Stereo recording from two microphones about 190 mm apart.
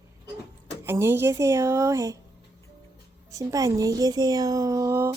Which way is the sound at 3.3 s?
15° right (ahead or behind).